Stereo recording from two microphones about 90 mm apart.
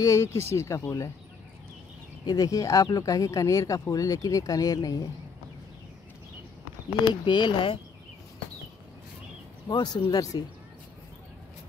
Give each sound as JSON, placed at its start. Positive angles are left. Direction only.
{"t": 0.0, "sound": "speech", "side_deg": 35}
{"t": 2.2, "sound": "speech", "side_deg": 40}
{"t": 7.2, "sound": "speech", "side_deg": 60}
{"t": 9.7, "sound": "speech", "side_deg": 50}